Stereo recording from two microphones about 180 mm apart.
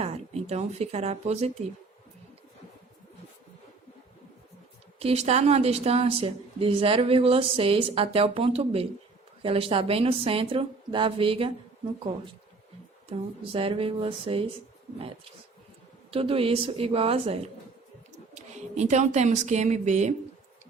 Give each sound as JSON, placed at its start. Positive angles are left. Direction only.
{"t": 0.0, "sound": "speech", "side_deg": -35}
{"t": 4.9, "sound": "a woman's voice", "side_deg": -35}
{"t": 13.1, "sound": "a woman's voice", "side_deg": -30}
{"t": 16.1, "sound": "a woman's voice", "side_deg": -30}